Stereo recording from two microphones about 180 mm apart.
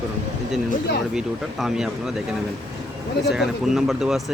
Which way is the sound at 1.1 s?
5° right (ahead or behind).